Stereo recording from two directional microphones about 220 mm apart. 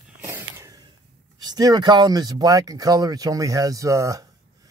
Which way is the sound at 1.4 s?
15° right (ahead or behind).